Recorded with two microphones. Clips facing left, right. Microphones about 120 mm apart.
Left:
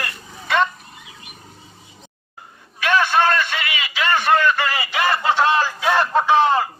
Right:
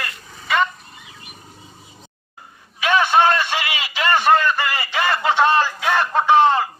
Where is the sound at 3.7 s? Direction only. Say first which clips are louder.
Even; 35° right (ahead or behind).